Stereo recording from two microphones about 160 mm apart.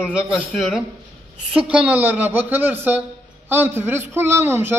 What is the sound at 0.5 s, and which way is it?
A man's voice, centre (ahead or behind).